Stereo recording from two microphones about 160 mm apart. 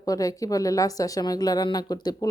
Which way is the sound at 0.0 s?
20° left (ahead or behind).